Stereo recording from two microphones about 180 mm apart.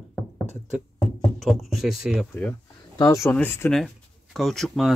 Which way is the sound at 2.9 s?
15° left (ahead or behind).